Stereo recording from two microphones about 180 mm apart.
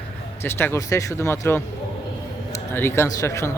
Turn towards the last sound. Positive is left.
turn(degrees=15)  # may be behind; listen again after turning